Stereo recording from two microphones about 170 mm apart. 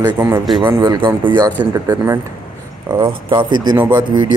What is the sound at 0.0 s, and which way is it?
A man's voice, 15° right (ahead or behind).